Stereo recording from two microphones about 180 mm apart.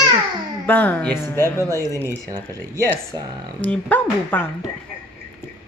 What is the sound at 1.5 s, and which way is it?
Speech, 20° right (ahead or behind).